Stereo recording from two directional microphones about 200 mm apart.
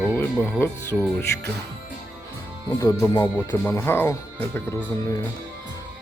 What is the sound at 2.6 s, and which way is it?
Speech, 15° left (ahead or behind).